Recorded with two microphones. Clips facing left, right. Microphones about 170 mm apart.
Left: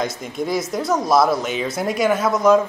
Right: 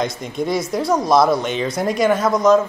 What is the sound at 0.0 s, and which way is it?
Speech, centre (ahead or behind).